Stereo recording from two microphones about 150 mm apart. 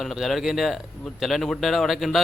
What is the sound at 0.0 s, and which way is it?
Speech, centre (ahead or behind).